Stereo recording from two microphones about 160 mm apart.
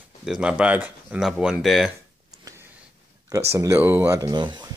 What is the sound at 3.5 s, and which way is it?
Speech, 15° right (ahead or behind).